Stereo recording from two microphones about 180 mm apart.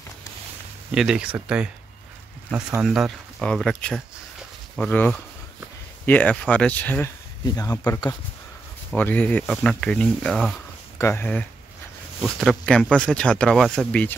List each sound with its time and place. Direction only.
0.9 s speech: 5° right (ahead or behind)
2.8 s speech: 5° right (ahead or behind); by 8.2 s 20° left (ahead or behind)
8.9 s speech: 10° left (ahead or behind)
11.0 s speech: 15° left (ahead or behind)